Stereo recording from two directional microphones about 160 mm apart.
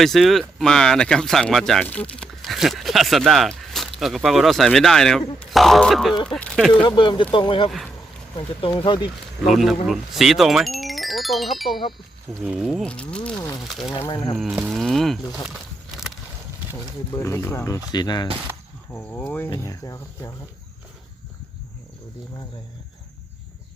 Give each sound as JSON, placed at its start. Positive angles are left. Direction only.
{"t": 0.0, "sound": "speech", "side_deg": 0}
{"t": 6.8, "sound": "speech", "side_deg": 30}
{"t": 9.5, "sound": "speech", "side_deg": 0}
{"t": 12.8, "sound": "speech", "side_deg": 5}
{"t": 14.3, "sound": "speech", "side_deg": -5}
{"t": 17.1, "sound": "speech", "side_deg": 15}
{"t": 18.9, "sound": "speech", "side_deg": 10}